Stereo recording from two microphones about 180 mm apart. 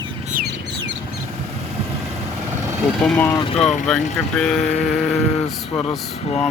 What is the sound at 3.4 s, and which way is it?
Speech, 35° left (ahead or behind).